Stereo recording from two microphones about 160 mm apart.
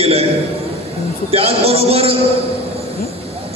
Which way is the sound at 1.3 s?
40° right (ahead or behind).